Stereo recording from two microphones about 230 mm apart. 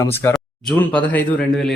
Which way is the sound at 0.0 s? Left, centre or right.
Centre.